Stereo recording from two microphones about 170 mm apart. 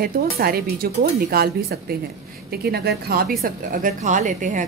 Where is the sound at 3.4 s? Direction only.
55° right (ahead or behind).